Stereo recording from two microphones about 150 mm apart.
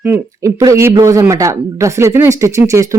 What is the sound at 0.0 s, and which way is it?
Speech, 15° right (ahead or behind).